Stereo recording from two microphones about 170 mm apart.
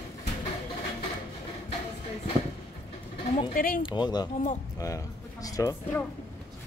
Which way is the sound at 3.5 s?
55° left (ahead or behind).